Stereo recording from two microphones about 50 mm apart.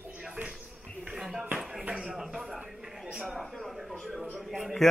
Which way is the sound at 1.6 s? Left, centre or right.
Right.